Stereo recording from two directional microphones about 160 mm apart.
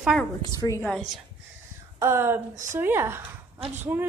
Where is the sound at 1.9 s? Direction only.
15° right (ahead or behind).